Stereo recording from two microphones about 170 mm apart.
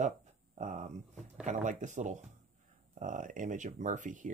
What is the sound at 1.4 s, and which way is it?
Speech, 45° right (ahead or behind).